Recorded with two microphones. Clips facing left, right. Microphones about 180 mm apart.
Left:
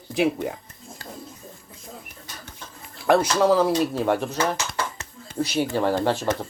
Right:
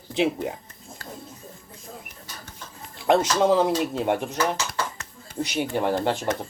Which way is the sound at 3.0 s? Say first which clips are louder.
Left 1 dB; 20° right (ahead or behind).